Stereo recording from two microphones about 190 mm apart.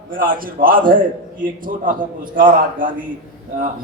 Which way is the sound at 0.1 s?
50° right (ahead or behind).